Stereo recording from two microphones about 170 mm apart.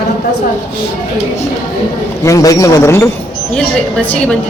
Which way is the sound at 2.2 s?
20° left (ahead or behind).